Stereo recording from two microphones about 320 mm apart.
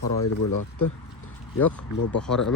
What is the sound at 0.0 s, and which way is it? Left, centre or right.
Speech, left.